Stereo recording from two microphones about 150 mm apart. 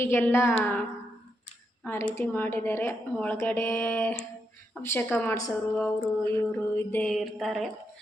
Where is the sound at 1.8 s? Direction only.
10° left (ahead or behind).